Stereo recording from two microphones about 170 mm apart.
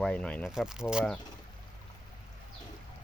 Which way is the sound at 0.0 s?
5° left (ahead or behind).